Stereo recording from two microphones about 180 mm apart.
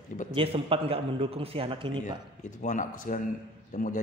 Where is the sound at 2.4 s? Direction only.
45° left (ahead or behind).